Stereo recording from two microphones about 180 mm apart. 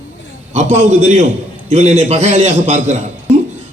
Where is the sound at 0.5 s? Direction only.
40° right (ahead or behind).